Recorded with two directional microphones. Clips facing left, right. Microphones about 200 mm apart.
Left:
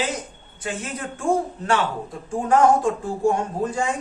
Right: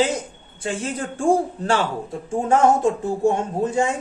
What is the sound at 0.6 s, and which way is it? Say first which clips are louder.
Speech: right 4 dB; 30° right (ahead or behind).